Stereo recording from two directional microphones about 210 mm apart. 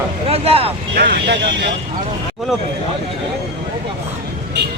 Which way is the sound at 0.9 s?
45° right (ahead or behind).